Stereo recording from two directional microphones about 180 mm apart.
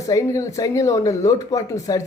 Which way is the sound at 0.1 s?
20° left (ahead or behind).